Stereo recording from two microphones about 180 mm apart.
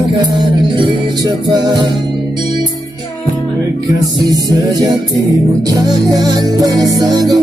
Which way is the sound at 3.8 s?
20° right (ahead or behind).